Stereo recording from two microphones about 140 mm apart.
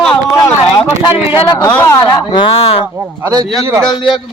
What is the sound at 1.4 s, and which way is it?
Speech, 30° left (ahead or behind).